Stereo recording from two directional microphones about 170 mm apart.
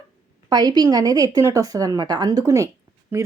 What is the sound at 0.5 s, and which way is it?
A woman's voice, 25° right (ahead or behind).